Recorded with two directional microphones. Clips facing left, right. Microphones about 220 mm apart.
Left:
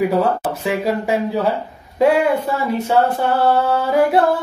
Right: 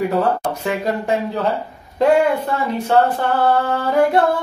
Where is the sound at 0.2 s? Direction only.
5° left (ahead or behind).